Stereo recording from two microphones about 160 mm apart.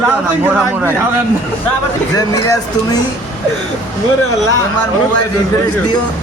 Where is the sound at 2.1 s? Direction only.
25° left (ahead or behind).